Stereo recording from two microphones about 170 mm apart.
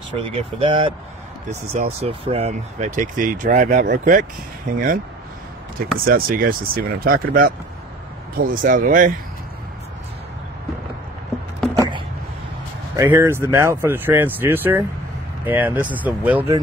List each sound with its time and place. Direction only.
0.1 s speech: 30° right (ahead or behind); by 9.1 s 50° right (ahead or behind)
12.9 s speech: 20° right (ahead or behind)